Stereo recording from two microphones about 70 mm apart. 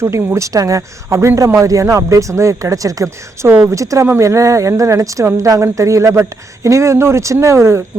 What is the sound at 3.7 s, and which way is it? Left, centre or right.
A man's voice, right.